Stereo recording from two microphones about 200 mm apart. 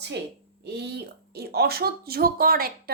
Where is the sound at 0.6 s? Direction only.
55° right (ahead or behind).